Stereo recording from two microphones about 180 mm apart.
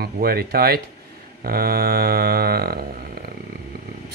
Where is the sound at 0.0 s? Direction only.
60° right (ahead or behind).